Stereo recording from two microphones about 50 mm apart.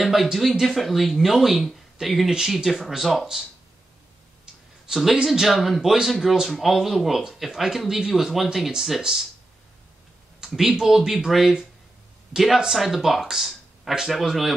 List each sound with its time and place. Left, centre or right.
0.0 s speech: centre
4.8 s speech: centre
5.5 s speech: centre
10.4 s speech: centre